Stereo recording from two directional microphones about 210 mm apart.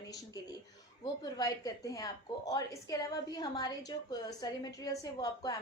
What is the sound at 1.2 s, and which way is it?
A woman's voice, 15° left (ahead or behind).